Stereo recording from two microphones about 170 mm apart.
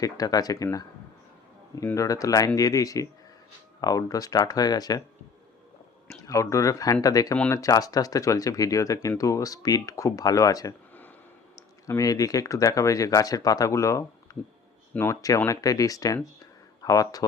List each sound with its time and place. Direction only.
0.0 s speech: 20° left (ahead or behind)
6.2 s speech: 20° left (ahead or behind)
7.3 s speech: 10° left (ahead or behind)
7.6 s speech: 20° left (ahead or behind)
14.3 s a sound: 20° left (ahead or behind)
14.9 s speech: 15° left (ahead or behind)